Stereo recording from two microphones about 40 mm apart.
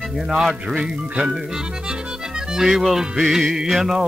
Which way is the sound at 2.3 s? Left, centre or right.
Centre.